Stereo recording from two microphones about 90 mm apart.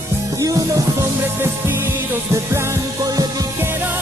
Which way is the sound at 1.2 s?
25° right (ahead or behind).